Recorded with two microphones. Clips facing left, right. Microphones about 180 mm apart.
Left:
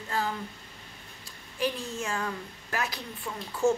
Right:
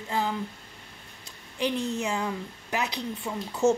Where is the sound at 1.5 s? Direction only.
20° right (ahead or behind).